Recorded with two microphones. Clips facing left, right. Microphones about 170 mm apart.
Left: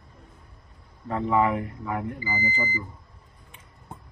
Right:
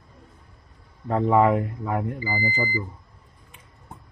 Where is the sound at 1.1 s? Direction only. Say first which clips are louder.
Right 4 dB; 35° right (ahead or behind).